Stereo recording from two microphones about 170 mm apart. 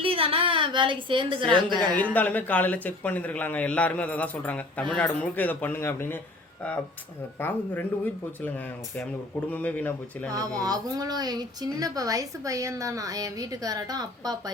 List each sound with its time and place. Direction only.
0.0 s a woman's voice: 35° right (ahead or behind)
2.1 s a man's voice: 10° left (ahead or behind)
7.3 s a man's voice: 10° left (ahead or behind)
10.3 s speech: 20° right (ahead or behind)